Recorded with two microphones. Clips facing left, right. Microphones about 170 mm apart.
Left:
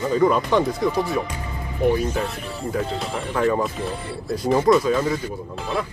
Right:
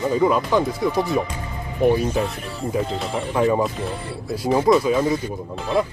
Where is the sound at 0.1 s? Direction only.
5° right (ahead or behind).